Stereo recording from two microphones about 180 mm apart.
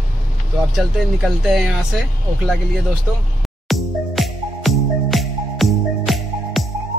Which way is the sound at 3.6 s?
Centre (ahead or behind).